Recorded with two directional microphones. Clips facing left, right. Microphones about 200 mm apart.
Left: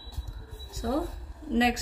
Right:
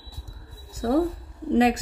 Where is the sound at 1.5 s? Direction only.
55° right (ahead or behind).